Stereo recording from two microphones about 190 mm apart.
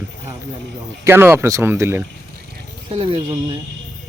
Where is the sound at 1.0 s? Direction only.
10° right (ahead or behind).